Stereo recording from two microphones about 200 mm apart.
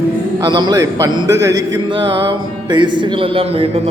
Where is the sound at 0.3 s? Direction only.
20° right (ahead or behind).